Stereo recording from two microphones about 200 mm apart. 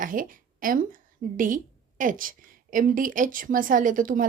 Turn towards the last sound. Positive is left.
turn(degrees=-40)  # may be behind; listen again after turning